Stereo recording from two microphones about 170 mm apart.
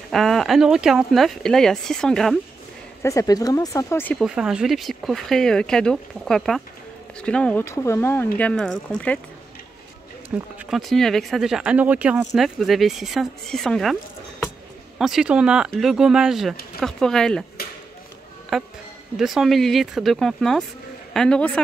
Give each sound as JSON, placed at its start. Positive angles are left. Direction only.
{"t": 0.1, "sound": "speech", "side_deg": 0}
{"t": 3.0, "sound": "speech", "side_deg": 20}
{"t": 4.2, "sound": "speech", "side_deg": -5}
{"t": 10.3, "sound": "speech", "side_deg": 0}
{"t": 15.0, "sound": "speech", "side_deg": -5}
{"t": 18.5, "sound": "speech", "side_deg": 0}